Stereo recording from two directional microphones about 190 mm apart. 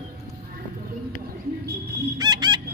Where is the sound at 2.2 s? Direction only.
20° right (ahead or behind).